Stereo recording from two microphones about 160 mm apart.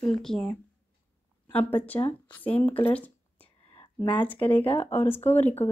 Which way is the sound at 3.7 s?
35° left (ahead or behind).